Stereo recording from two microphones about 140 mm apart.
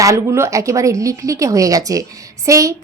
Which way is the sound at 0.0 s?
20° right (ahead or behind).